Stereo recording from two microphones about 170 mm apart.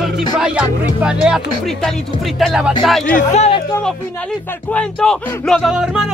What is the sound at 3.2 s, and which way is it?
Speech, 40° left (ahead or behind).